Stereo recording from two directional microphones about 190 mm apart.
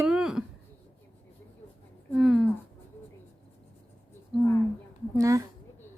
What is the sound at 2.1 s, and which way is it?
Speech, 5° right (ahead or behind).